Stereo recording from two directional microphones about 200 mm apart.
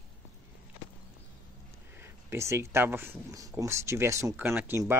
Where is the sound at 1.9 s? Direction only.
10° right (ahead or behind).